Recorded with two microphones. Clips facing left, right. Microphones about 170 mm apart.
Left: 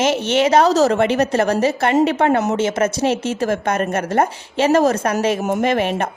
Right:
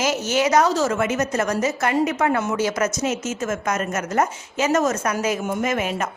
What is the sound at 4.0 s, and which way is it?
A woman's voice, 30° left (ahead or behind).